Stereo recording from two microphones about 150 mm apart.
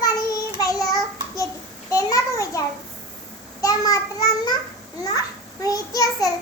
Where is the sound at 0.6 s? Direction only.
25° left (ahead or behind).